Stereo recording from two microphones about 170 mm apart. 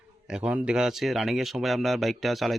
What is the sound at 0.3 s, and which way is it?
Speech, 5° right (ahead or behind).